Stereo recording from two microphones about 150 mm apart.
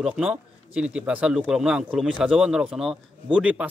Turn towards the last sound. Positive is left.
turn(degrees=-5)  # may be behind; listen again after turning